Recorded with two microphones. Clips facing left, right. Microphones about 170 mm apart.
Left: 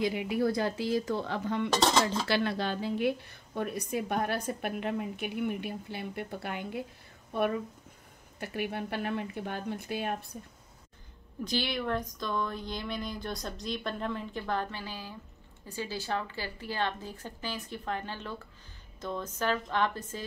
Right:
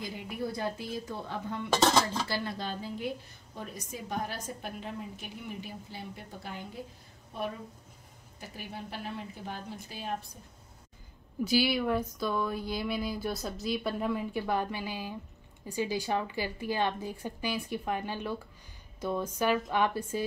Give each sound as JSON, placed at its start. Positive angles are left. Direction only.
{"t": 0.0, "sound": "speech", "side_deg": 85}
{"t": 2.2, "sound": "a woman's voice", "side_deg": 75}
{"t": 11.4, "sound": "speech", "side_deg": -5}